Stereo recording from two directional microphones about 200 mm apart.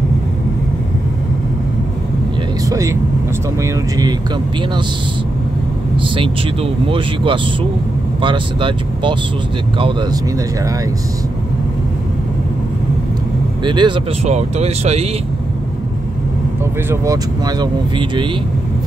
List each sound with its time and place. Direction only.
2.6 s vehicle: 15° right (ahead or behind)
5.9 s speech: 25° right (ahead or behind)
13.7 s speech: 25° right (ahead or behind)
16.9 s speech: 15° right (ahead or behind)